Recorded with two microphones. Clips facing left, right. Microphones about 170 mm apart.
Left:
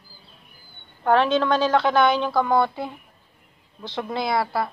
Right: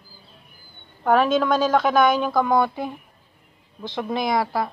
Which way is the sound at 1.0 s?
10° right (ahead or behind).